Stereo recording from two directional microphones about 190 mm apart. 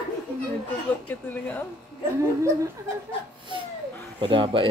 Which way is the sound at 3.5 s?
25° right (ahead or behind).